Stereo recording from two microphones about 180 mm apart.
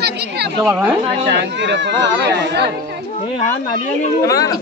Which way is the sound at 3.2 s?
30° left (ahead or behind).